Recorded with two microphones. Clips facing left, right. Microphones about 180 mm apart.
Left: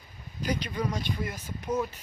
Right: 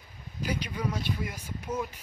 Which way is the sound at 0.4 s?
10° right (ahead or behind).